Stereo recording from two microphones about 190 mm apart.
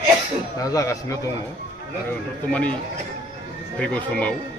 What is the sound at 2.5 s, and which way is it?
Speech, 5° left (ahead or behind).